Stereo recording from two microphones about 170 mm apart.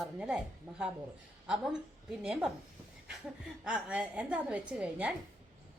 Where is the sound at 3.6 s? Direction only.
5° right (ahead or behind).